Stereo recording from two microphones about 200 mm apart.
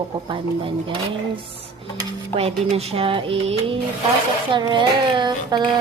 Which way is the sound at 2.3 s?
30° right (ahead or behind).